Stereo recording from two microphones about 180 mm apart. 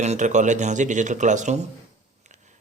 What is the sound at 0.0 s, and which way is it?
A man's voice, 40° right (ahead or behind).